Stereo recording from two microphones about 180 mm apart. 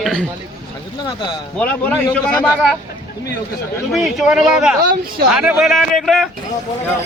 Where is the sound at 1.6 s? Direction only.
10° left (ahead or behind).